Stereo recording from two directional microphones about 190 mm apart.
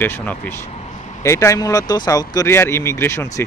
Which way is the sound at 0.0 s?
10° left (ahead or behind).